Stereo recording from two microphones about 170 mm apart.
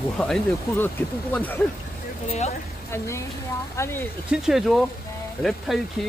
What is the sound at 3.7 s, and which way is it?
Speech, 15° left (ahead or behind).